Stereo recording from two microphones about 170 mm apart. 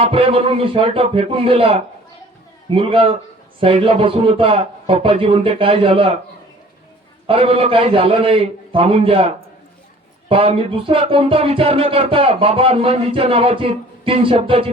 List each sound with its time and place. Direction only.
0.0 s speech: 35° right (ahead or behind)
7.3 s speech: 35° right (ahead or behind)